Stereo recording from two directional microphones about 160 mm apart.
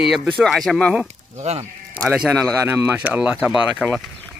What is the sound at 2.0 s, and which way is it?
Speech, 5° right (ahead or behind).